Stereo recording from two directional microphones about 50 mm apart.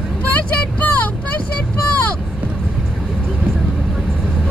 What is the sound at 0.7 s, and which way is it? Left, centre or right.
Vehicle, left.